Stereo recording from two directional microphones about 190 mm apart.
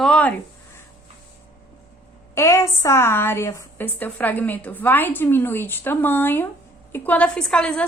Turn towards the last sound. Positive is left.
turn(degrees=5)  # may be behind; listen again after turning